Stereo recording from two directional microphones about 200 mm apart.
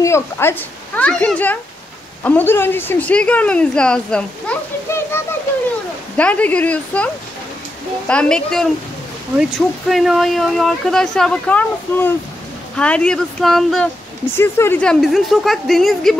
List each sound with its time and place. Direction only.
0.0 s speech: 10° left (ahead or behind)
8.1 s speech: 5° left (ahead or behind)
14.3 s speech: 10° left (ahead or behind)